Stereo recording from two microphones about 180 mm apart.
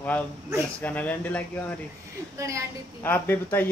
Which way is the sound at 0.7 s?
10° left (ahead or behind).